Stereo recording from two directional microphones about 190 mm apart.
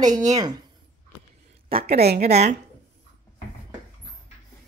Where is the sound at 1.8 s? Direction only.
55° right (ahead or behind).